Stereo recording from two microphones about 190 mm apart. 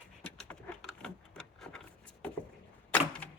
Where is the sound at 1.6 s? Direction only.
5° left (ahead or behind).